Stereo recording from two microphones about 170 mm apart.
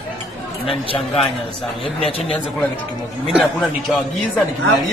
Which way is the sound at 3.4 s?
5° left (ahead or behind).